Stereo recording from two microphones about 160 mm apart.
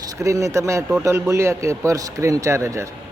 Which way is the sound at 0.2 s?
20° right (ahead or behind).